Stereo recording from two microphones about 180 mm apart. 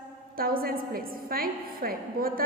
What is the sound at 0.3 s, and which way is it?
A woman's voice, 55° right (ahead or behind).